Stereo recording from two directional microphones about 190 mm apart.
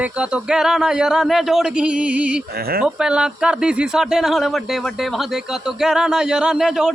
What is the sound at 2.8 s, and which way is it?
Speech, 5° right (ahead or behind).